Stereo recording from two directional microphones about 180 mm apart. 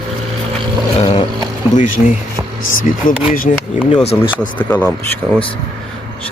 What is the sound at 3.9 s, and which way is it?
Speech, 35° left (ahead or behind).